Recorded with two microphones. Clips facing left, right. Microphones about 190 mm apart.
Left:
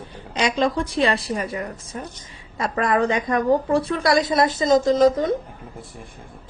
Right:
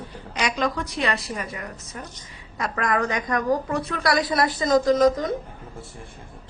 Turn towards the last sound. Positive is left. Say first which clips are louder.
# left 2 dB
turn(degrees=30)  # may be behind; listen again after turning